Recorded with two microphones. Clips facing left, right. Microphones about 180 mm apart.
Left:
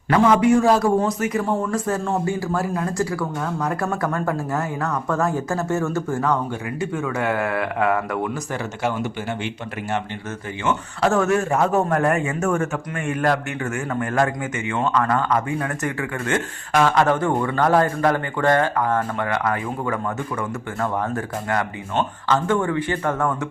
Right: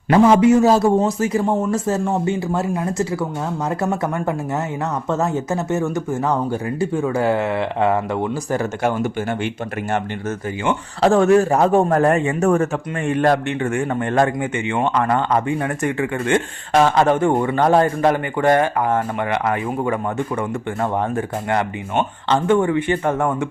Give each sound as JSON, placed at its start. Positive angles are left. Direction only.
{"t": 0.1, "sound": "speech", "side_deg": -25}
{"t": 8.5, "sound": "speech", "side_deg": -50}
{"t": 10.6, "sound": "a man's voice", "side_deg": -30}